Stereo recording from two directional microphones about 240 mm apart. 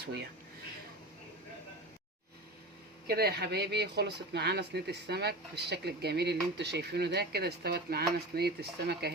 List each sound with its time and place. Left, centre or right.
0.0 s speech: right
3.1 s speech: right